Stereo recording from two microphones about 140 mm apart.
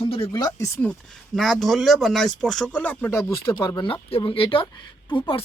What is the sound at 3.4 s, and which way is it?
Speech, 30° left (ahead or behind).